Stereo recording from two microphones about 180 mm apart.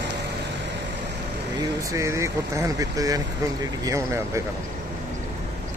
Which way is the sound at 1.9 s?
15° right (ahead or behind).